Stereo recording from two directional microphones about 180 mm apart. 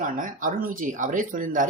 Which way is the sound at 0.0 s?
50° right (ahead or behind).